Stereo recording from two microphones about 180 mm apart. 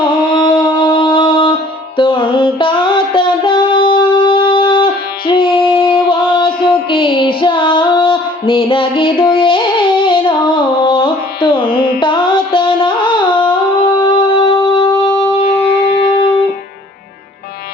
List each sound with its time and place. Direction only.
0.6 s music: 30° left (ahead or behind)
6.9 s female singing: 30° left (ahead or behind)
15.4 s music: 60° left (ahead or behind)